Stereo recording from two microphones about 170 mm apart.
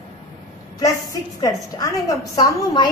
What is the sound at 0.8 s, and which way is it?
A woman's voice, 20° left (ahead or behind).